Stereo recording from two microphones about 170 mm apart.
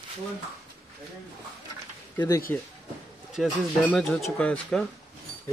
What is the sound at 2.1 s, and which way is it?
Speech, 20° left (ahead or behind).